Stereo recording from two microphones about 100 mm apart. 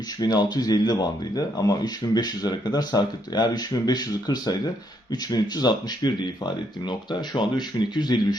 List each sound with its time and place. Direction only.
0.2 s speech: 45° left (ahead or behind)